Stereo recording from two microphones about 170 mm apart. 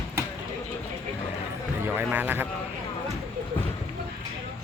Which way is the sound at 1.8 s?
10° right (ahead or behind).